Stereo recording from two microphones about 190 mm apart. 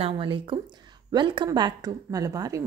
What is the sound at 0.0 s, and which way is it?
Speech, 25° right (ahead or behind).